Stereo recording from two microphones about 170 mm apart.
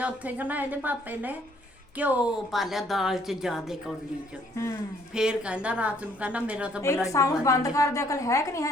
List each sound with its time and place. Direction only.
0.0 s a woman's voice: 10° right (ahead or behind)
5.1 s a woman's voice: 5° right (ahead or behind)
7.1 s a woman's voice: 20° left (ahead or behind)